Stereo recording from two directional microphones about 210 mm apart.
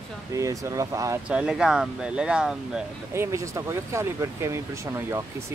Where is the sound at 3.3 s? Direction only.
15° right (ahead or behind).